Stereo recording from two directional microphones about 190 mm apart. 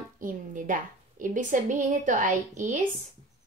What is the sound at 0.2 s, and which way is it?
A woman's voice, 45° right (ahead or behind).